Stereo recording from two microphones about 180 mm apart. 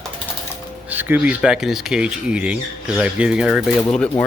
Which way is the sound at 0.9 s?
10° right (ahead or behind).